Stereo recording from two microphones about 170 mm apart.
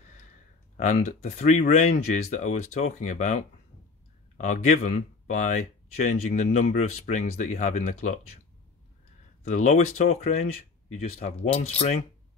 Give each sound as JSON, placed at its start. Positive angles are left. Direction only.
{"t": 0.7, "sound": "speech", "side_deg": 50}
{"t": 9.4, "sound": "speech", "side_deg": 45}